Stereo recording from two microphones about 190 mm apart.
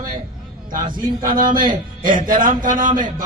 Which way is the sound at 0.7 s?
45° right (ahead or behind).